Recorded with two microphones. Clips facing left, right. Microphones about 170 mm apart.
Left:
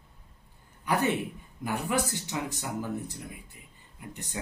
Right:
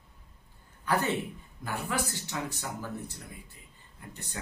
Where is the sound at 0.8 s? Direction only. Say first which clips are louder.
Left 1 dB; 15° left (ahead or behind).